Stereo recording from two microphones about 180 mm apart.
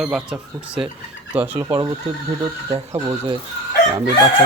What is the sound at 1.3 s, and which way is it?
Speech, 10° right (ahead or behind).